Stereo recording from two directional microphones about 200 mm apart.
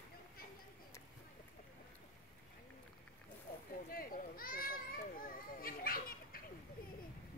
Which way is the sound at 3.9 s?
45° left (ahead or behind).